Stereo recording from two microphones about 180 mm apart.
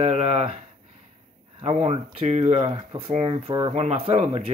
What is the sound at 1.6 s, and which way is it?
Speech, 35° right (ahead or behind).